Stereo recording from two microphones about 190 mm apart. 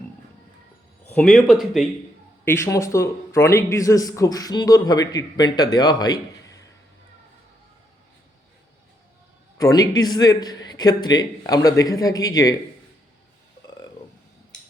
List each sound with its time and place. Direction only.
1.1 s speech: 5° left (ahead or behind)
2.4 s a man's voice: 15° left (ahead or behind)
9.6 s a man's voice: 20° left (ahead or behind)